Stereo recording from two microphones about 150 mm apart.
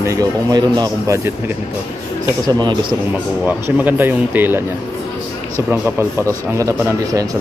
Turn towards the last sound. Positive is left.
turn(degrees=-20)  # may be behind; listen again after turning